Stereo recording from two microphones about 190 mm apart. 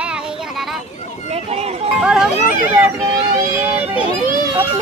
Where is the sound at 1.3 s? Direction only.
35° right (ahead or behind).